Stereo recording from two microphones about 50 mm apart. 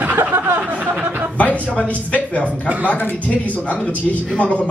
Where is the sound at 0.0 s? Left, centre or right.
Right.